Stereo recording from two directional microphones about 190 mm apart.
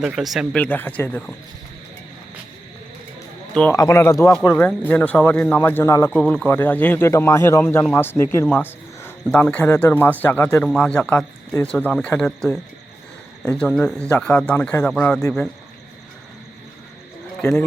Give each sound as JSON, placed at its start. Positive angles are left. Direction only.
{"t": 0.0, "sound": "speech", "side_deg": 0}
{"t": 3.5, "sound": "a man's voice", "side_deg": 5}
{"t": 3.8, "sound": "speech", "side_deg": 15}